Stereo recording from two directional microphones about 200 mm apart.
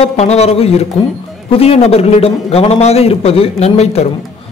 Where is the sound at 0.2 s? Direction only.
30° left (ahead or behind).